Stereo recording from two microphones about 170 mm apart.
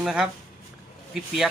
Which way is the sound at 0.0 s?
5° right (ahead or behind).